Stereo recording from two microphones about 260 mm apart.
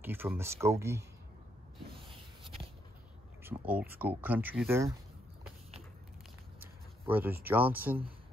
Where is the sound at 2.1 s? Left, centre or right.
Right.